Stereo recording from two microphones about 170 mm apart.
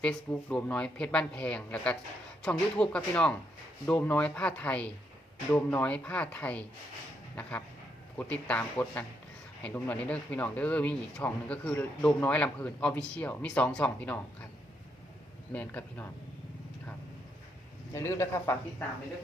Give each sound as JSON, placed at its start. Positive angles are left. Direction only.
{"t": 0.0, "sound": "speech", "side_deg": 10}
{"t": 8.2, "sound": "speech", "side_deg": 10}
{"t": 9.6, "sound": "speech", "side_deg": 10}
{"t": 15.5, "sound": "speech", "side_deg": 10}
{"t": 17.9, "sound": "speech", "side_deg": 15}